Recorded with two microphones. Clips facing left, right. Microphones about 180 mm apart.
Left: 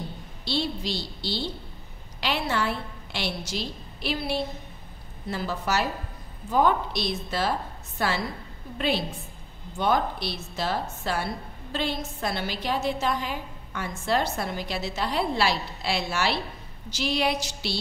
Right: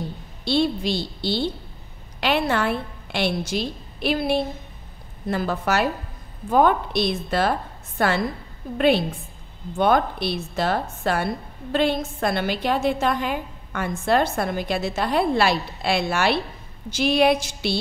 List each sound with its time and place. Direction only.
0.5 s a woman's voice: 55° right (ahead or behind)